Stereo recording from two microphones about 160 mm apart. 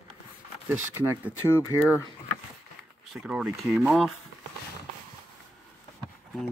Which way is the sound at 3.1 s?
5° right (ahead or behind).